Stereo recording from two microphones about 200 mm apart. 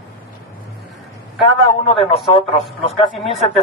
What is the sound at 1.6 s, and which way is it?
Speech, 25° left (ahead or behind).